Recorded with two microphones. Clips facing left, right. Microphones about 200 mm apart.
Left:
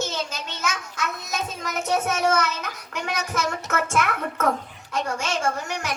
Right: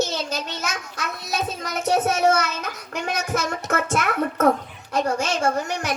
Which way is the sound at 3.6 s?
35° right (ahead or behind).